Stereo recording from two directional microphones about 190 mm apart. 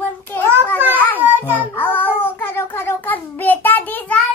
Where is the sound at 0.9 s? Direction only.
10° left (ahead or behind).